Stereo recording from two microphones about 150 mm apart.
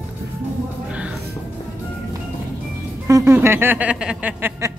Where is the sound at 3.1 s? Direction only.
20° right (ahead or behind).